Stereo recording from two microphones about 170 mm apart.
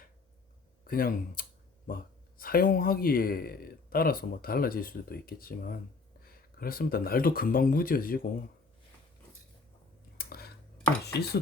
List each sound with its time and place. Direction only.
0.9 s speech: 60° left (ahead or behind)
10.2 s a sound: 65° left (ahead or behind)
11.0 s chopping: 75° left (ahead or behind)